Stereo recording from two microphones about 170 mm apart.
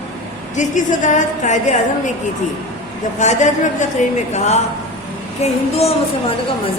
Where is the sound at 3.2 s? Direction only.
45° left (ahead or behind).